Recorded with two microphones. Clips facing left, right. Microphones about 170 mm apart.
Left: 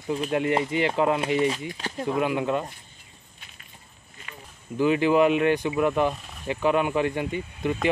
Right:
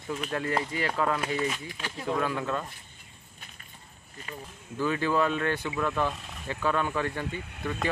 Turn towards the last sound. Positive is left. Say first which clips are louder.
# left 6 dB
turn(degrees=20)  # may be behind; listen again after turning